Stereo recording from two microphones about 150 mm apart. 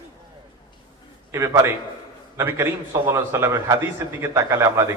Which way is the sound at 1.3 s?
20° right (ahead or behind).